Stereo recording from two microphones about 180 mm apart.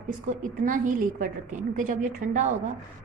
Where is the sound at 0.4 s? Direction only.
45° right (ahead or behind).